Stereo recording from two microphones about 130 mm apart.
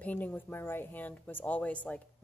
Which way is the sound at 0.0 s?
15° left (ahead or behind).